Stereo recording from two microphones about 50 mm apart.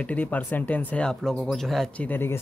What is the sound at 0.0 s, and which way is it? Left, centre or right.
Speech, left.